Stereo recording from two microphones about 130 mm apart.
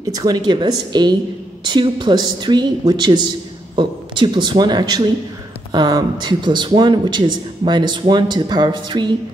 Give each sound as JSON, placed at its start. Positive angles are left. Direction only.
{"t": 0.2, "sound": "speech", "side_deg": -30}